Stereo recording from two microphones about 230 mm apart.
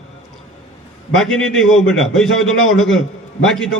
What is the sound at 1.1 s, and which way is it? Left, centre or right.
A man's voice, centre.